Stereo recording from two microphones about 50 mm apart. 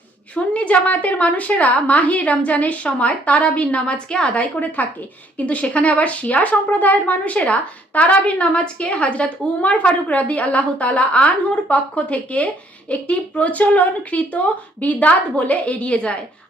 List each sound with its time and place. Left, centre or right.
0.3 s speech: left
4.6 s speech: left